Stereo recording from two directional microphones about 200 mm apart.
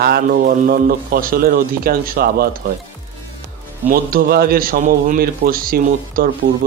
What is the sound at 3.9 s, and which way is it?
Speech, 45° right (ahead or behind).